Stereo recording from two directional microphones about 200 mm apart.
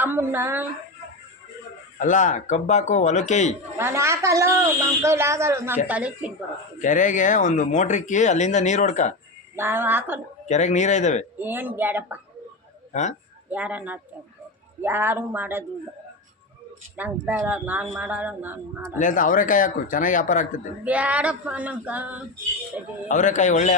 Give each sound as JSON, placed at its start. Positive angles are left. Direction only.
{"t": 0.0, "sound": "speech", "side_deg": -10}
{"t": 2.0, "sound": "speech", "side_deg": 40}
{"t": 3.8, "sound": "a woman's voice", "side_deg": -15}
{"t": 6.7, "sound": "speech", "side_deg": 40}
{"t": 9.6, "sound": "a woman's voice", "side_deg": -10}
{"t": 10.5, "sound": "speech", "side_deg": 35}
{"t": 11.3, "sound": "a woman's voice", "side_deg": -10}
{"t": 12.9, "sound": "speech", "side_deg": 35}
{"t": 13.5, "sound": "a woman's voice", "side_deg": -10}
{"t": 17.0, "sound": "a woman's voice", "side_deg": -10}
{"t": 18.9, "sound": "speech", "side_deg": 40}
{"t": 20.8, "sound": "a woman's voice", "side_deg": -5}
{"t": 23.0, "sound": "speech", "side_deg": 40}